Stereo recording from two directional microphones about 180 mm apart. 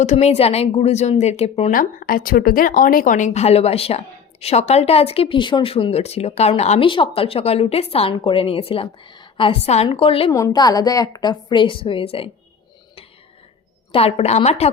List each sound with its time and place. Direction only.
0.0 s a woman's voice: 40° left (ahead or behind)
1.7 s a woman's voice: 50° left (ahead or behind); by 10.3 s 30° left (ahead or behind)
10.3 s a woman's voice: 20° left (ahead or behind)
13.9 s a woman's voice: 35° left (ahead or behind)